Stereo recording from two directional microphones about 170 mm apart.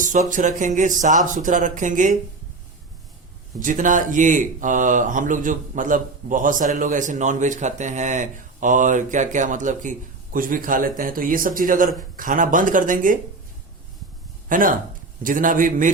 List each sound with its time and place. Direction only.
0.0 s speech: 50° right (ahead or behind)
3.6 s a man's voice: 50° right (ahead or behind)
14.5 s speech: 55° right (ahead or behind)